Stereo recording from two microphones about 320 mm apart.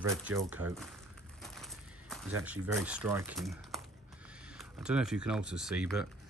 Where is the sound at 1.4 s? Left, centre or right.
Centre.